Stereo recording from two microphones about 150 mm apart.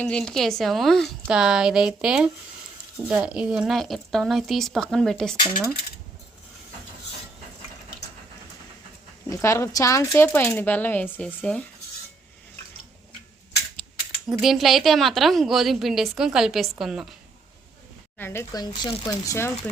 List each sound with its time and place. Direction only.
0.0 s a woman's voice: 5° left (ahead or behind)
9.3 s speech: 20° left (ahead or behind)
14.3 s a woman's voice: centre (ahead or behind)
18.2 s speech: 15° left (ahead or behind)